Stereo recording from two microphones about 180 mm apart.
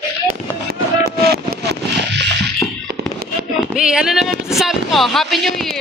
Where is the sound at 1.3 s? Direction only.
65° right (ahead or behind).